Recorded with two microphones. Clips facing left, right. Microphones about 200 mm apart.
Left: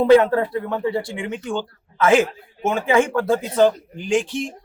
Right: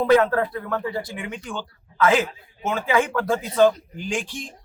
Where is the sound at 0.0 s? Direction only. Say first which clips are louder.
Left 4 dB; 25° left (ahead or behind).